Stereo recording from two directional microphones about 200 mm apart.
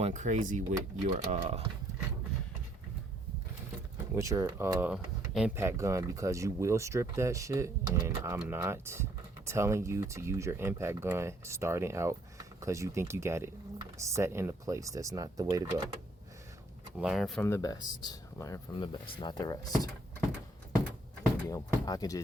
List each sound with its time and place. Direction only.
0.0 s speech: 35° right (ahead or behind)
4.1 s speech: 15° right (ahead or behind)
17.0 s speech: centre (ahead or behind)
17.4 s speech: 15° left (ahead or behind)
21.4 s speech: 15° left (ahead or behind)